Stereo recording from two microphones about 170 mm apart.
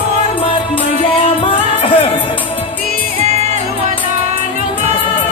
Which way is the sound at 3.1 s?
40° right (ahead or behind).